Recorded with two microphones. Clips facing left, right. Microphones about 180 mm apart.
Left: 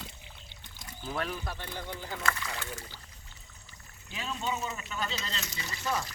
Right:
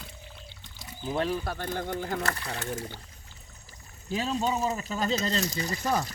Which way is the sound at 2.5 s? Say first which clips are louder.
Right 7 dB; 50° right (ahead or behind).